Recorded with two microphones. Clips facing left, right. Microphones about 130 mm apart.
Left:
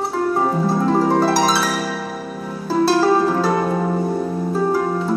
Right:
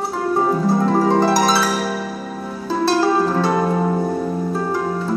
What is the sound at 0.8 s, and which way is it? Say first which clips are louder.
Harp: left 1 dB; centre (ahead or behind).